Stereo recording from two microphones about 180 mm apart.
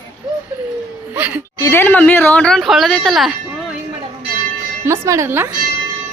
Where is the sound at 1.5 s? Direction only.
15° left (ahead or behind).